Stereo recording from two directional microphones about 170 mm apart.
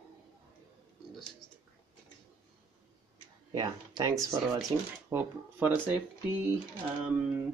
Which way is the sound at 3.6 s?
25° right (ahead or behind).